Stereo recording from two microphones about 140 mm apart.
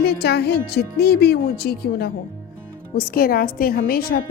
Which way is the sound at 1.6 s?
90° left.